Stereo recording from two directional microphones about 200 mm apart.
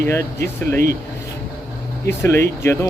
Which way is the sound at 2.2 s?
10° left (ahead or behind).